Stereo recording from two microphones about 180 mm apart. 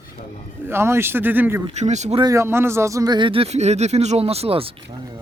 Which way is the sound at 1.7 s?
40° right (ahead or behind).